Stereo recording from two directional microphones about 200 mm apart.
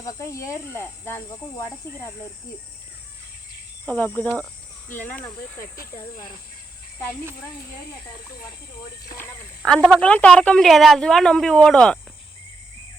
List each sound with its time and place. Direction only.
0.0 s speech: 15° left (ahead or behind)
3.8 s speech: 10° left (ahead or behind)
9.6 s a woman's voice: centre (ahead or behind)